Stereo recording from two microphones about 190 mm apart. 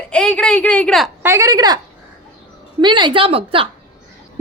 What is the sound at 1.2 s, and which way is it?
Speech, 15° right (ahead or behind).